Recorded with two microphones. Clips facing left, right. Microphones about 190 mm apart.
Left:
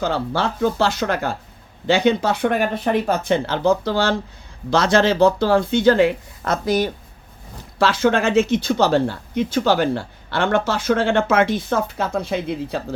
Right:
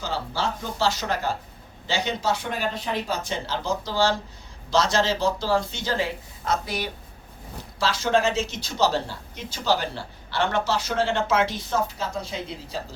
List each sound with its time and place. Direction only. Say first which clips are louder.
0.0 s speech: left 7 dB; 60° left (ahead or behind)
7.8 s speech: left 5 dB; 60° left (ahead or behind)